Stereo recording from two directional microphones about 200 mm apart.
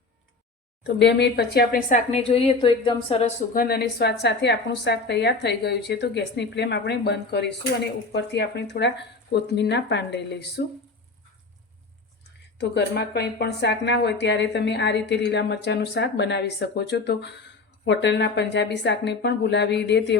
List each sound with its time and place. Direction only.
0.9 s a woman's voice: 60° left (ahead or behind)
2.0 s a woman's voice: 30° left (ahead or behind)
3.5 s a woman's voice: 50° left (ahead or behind)
12.5 s a woman's voice: 55° left (ahead or behind)